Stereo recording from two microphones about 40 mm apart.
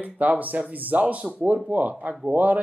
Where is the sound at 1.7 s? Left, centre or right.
Right.